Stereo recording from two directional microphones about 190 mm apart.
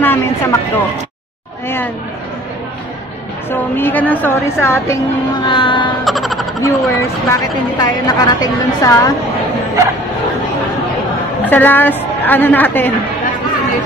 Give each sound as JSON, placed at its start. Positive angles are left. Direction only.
{"t": 0.0, "sound": "a woman's voice", "side_deg": 10}
{"t": 3.4, "sound": "a woman's voice", "side_deg": 10}
{"t": 5.5, "sound": "a woman's voice", "side_deg": 25}
{"t": 6.0, "sound": "music", "side_deg": 0}
{"t": 6.6, "sound": "a woman's voice", "side_deg": 15}
{"t": 11.4, "sound": "a woman's voice", "side_deg": 10}